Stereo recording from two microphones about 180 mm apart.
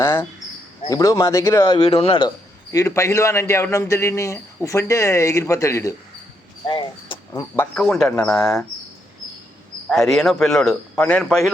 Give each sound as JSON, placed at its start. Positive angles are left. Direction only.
{"t": 0.0, "sound": "a sound", "side_deg": 15}
{"t": 0.9, "sound": "a man's voice", "side_deg": 15}
{"t": 2.7, "sound": "speech", "side_deg": 15}
{"t": 6.7, "sound": "speech", "side_deg": 30}
{"t": 7.5, "sound": "speech", "side_deg": 10}
{"t": 9.9, "sound": "speech", "side_deg": 0}